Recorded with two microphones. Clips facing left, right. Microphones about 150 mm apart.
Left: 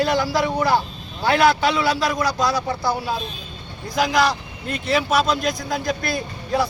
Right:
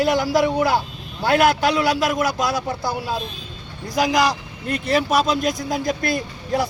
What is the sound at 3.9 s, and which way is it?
Speech, 40° right (ahead or behind).